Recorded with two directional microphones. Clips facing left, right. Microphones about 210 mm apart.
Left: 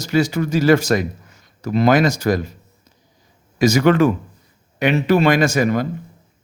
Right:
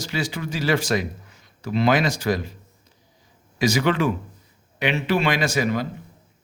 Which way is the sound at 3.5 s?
45° left (ahead or behind).